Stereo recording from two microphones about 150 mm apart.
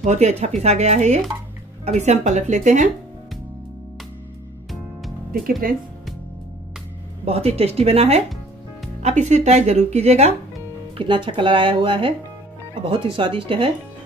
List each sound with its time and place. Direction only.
0.0 s speech: 45° right (ahead or behind)
5.6 s speech: 70° right (ahead or behind)
7.2 s speech: 45° right (ahead or behind)
11.0 s speech: 35° right (ahead or behind)